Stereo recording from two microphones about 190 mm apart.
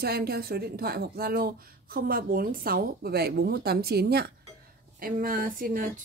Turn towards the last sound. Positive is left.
turn(degrees=-45)  # may be behind; listen again after turning